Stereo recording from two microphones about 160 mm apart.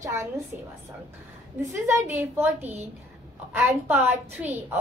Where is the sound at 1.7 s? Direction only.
15° right (ahead or behind).